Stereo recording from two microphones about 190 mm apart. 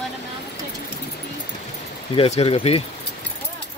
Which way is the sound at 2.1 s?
30° left (ahead or behind).